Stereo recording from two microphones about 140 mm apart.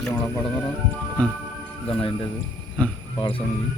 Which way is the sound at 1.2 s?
10° left (ahead or behind).